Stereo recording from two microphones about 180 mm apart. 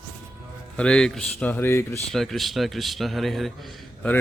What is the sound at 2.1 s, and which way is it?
A man's voice, centre (ahead or behind).